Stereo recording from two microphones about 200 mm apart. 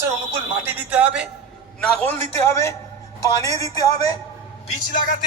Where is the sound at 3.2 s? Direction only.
15° left (ahead or behind).